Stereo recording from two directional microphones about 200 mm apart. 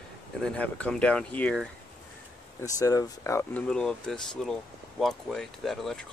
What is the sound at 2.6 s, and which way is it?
Speech, 15° left (ahead or behind).